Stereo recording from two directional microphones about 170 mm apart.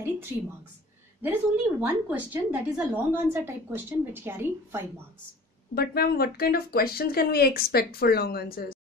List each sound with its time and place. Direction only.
1.2 s a woman's voice: 10° right (ahead or behind)
5.8 s speech: 65° left (ahead or behind)